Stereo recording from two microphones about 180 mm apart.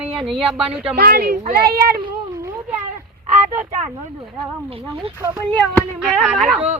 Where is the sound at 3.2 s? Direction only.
40° right (ahead or behind).